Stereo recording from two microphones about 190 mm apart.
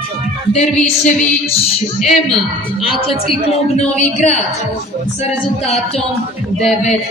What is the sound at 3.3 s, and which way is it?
A woman's voice, 35° left (ahead or behind).